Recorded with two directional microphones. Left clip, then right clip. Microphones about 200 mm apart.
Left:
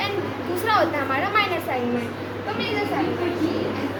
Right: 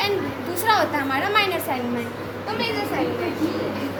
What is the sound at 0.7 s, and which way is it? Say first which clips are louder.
Speech: right 1 dB; 20° left (ahead or behind).